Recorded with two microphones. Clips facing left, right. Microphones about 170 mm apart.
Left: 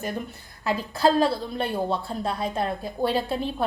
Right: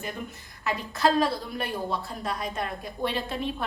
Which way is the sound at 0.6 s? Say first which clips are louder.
Left 3 dB; 30° left (ahead or behind).